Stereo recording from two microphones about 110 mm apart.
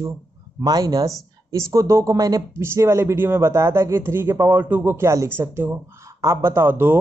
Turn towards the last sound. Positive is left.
turn(degrees=-20)  # may be behind; listen again after turning